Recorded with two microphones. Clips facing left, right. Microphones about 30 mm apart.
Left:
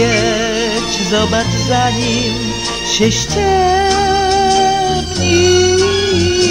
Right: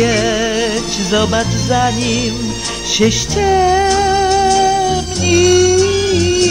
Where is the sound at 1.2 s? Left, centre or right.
Centre.